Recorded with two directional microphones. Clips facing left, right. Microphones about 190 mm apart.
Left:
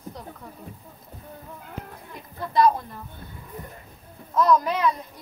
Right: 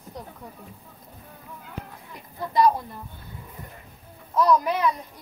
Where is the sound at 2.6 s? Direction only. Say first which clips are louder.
Even; 15° right (ahead or behind).